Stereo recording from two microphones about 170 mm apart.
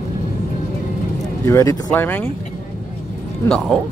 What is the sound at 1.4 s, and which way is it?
Speech, 20° left (ahead or behind).